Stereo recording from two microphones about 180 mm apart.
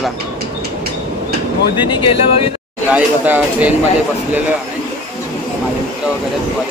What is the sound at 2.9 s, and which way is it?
Speech, 5° right (ahead or behind).